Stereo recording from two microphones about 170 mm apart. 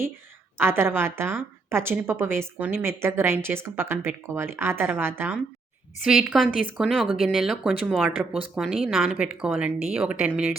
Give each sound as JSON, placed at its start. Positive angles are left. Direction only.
{"t": 0.5, "sound": "a woman's voice", "side_deg": -15}
{"t": 6.1, "sound": "a woman's voice", "side_deg": 0}